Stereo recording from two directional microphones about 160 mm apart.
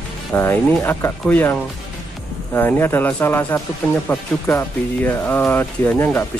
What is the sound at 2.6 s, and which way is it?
Speech, 15° left (ahead or behind).